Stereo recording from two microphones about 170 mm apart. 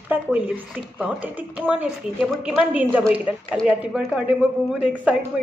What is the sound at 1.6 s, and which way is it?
A woman's voice, 5° right (ahead or behind).